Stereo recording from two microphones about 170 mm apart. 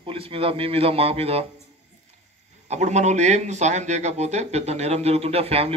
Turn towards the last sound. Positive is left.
turn(degrees=-35)  # may be behind; listen again after turning